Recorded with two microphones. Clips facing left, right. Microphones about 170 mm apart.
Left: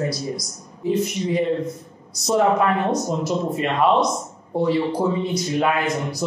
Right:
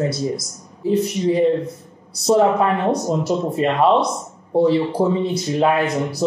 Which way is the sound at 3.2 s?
30° right (ahead or behind).